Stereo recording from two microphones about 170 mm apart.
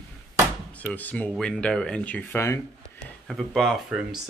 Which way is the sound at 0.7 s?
10° left (ahead or behind).